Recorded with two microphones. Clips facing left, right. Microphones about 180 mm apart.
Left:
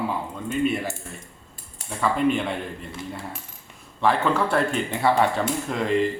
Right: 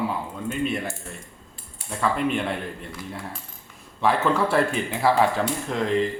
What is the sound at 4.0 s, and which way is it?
Speech, centre (ahead or behind).